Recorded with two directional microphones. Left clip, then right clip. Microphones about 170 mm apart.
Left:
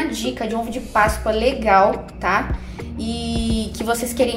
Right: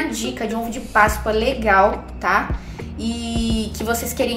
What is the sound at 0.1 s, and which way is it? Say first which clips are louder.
A woman's voice: left 1 dB; 15° left (ahead or behind).